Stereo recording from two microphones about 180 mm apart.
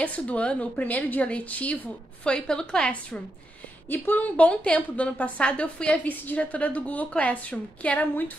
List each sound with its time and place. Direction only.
0.0 s a woman's voice: 5° left (ahead or behind)